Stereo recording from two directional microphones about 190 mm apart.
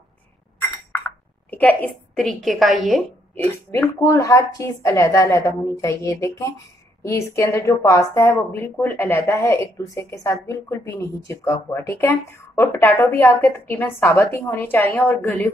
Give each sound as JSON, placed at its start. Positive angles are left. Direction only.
{"t": 1.5, "sound": "a woman's voice", "side_deg": 10}
{"t": 3.7, "sound": "speech", "side_deg": 10}